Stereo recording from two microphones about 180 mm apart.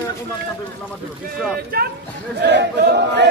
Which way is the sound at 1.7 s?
55° right (ahead or behind).